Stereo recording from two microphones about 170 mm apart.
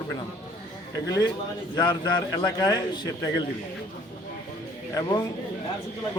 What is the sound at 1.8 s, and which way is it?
Speech, 25° left (ahead or behind).